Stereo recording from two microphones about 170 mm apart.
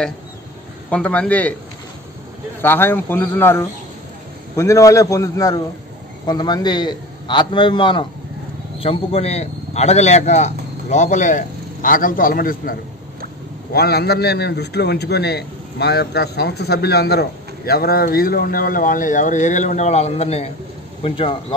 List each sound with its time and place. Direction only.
0.8 s speech: 5° left (ahead or behind)
2.6 s a man's voice: 10° left (ahead or behind); by 12.7 s 60° left (ahead or behind)
13.7 s a man's voice: 70° left (ahead or behind); by 21.5 s 30° left (ahead or behind)